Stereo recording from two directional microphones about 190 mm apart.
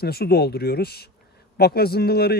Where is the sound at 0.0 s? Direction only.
55° left (ahead or behind).